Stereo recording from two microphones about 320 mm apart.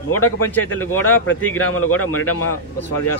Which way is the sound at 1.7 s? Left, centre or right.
Left.